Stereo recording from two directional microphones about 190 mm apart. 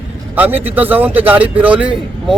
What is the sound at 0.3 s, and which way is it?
Speech, 10° right (ahead or behind).